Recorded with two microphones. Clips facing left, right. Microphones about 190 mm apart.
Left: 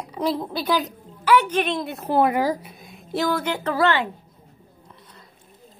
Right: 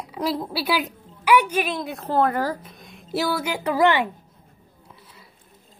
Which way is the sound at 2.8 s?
Centre (ahead or behind).